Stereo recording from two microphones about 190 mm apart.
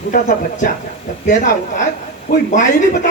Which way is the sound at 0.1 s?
40° left (ahead or behind).